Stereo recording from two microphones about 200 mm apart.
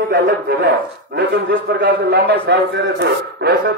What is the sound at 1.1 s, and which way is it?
A man's voice, 55° right (ahead or behind).